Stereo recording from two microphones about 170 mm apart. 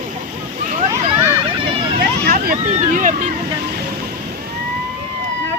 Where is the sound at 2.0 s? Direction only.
65° right (ahead or behind).